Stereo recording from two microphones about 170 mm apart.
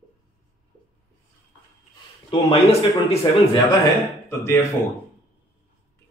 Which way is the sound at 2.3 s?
35° left (ahead or behind).